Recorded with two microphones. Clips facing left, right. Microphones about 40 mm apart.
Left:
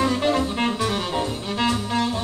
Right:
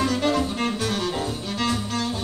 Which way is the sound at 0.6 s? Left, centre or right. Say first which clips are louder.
Left 2 dB; left.